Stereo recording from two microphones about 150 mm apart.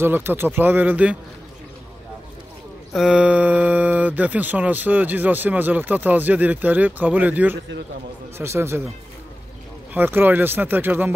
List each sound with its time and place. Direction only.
0.0 s speech: 15° right (ahead or behind)
2.9 s speech: 5° right (ahead or behind)
9.9 s speech: 10° right (ahead or behind)